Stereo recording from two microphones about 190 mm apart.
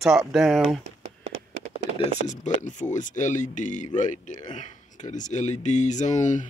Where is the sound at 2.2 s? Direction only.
40° left (ahead or behind).